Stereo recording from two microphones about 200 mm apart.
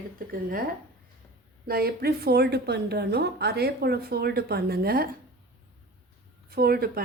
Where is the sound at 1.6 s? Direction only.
50° right (ahead or behind).